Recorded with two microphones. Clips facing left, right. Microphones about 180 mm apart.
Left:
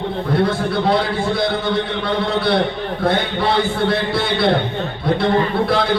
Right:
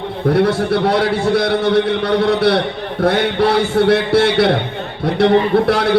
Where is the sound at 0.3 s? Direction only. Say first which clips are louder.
Right 3 dB; 75° right (ahead or behind).